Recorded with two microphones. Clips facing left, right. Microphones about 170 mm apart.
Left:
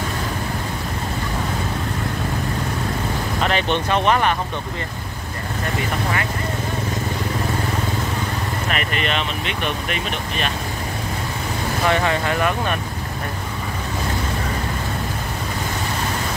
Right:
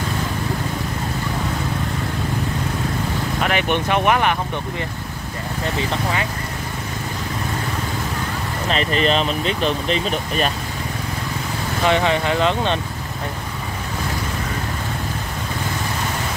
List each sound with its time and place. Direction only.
3.4 s speech: 15° right (ahead or behind)
8.6 s speech: 30° right (ahead or behind)
11.8 s speech: 20° right (ahead or behind)